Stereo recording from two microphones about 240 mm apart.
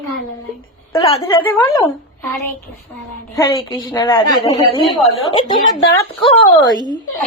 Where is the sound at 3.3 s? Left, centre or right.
Centre.